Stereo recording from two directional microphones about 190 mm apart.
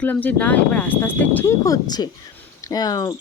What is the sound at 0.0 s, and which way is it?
Speech, 10° left (ahead or behind).